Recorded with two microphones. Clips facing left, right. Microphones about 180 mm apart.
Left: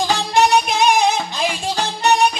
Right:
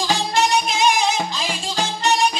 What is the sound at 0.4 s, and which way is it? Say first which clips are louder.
Music: left 5 dB; 60° left (ahead or behind).